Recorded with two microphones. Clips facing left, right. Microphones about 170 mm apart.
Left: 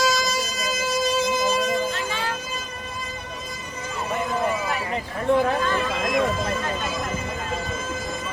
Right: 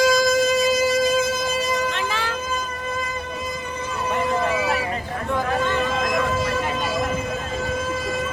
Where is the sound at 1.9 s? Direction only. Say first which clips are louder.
Right 2 dB; 85° right.